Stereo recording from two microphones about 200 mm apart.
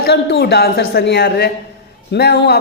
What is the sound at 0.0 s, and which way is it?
A man's voice, 55° left (ahead or behind).